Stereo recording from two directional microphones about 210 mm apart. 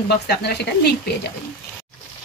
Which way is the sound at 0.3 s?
50° left (ahead or behind).